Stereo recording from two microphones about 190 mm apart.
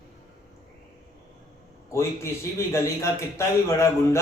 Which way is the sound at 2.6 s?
15° left (ahead or behind).